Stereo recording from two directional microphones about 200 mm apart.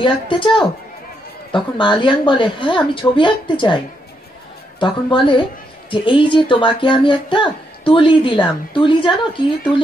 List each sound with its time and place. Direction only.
0.0 s speech: 25° left (ahead or behind)